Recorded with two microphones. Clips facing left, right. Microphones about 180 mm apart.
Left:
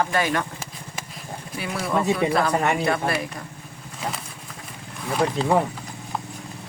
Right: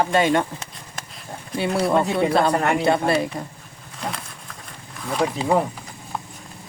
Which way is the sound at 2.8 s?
25° right (ahead or behind).